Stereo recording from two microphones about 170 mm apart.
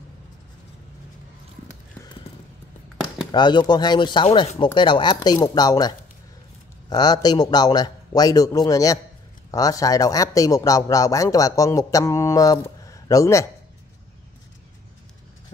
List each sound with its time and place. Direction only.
3.3 s speech: 25° left (ahead or behind)